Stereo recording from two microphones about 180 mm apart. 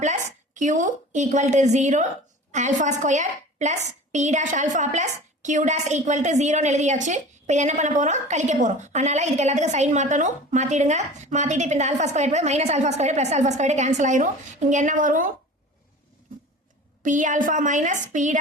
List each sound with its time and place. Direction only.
0.0 s a woman's voice: 40° right (ahead or behind)
17.0 s a woman's voice: 45° right (ahead or behind)